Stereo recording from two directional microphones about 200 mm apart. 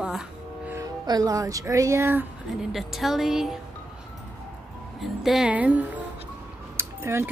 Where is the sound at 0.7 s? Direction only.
20° right (ahead or behind).